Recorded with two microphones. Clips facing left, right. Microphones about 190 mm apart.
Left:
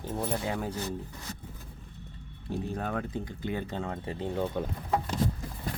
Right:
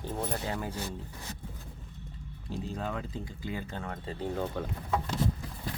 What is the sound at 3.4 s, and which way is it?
Speech, 20° left (ahead or behind).